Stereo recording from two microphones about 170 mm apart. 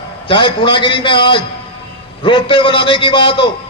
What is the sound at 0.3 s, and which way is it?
A man's voice, 30° left (ahead or behind).